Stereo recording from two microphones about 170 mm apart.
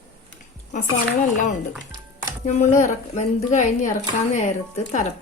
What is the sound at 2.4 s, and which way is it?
Speech, 45° left (ahead or behind).